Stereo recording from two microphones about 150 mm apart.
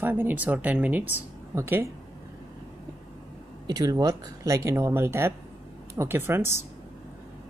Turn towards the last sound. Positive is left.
turn(degrees=-15)  # may be behind; listen again after turning